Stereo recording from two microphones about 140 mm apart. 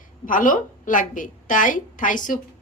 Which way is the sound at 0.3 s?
75° left (ahead or behind).